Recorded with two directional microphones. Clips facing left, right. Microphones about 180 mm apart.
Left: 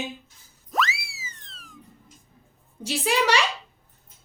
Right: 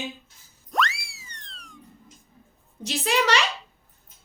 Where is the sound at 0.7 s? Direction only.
Centre (ahead or behind).